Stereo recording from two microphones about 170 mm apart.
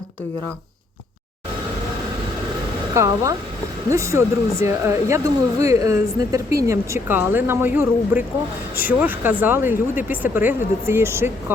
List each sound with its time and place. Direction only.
2.9 s speech: 15° right (ahead or behind)